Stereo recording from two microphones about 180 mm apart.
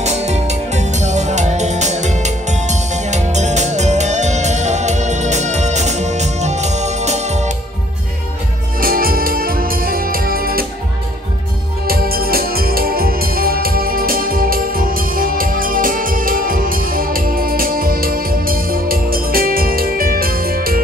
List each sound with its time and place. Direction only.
0.0 s music: 40° right (ahead or behind)
8.7 s music: 55° right (ahead or behind)
11.9 s music: 55° right (ahead or behind)